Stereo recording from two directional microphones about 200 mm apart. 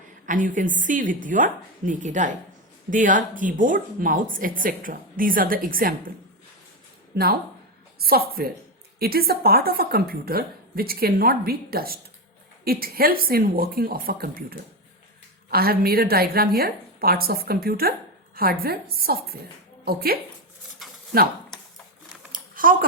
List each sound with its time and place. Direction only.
0.3 s a woman's voice: 40° right (ahead or behind)
7.9 s a woman's voice: 50° right (ahead or behind)
22.3 s typing: 45° right (ahead or behind)